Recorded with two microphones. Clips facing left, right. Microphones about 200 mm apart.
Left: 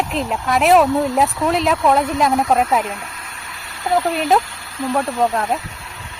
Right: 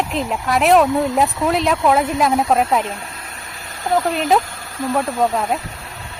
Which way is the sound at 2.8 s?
30° right (ahead or behind).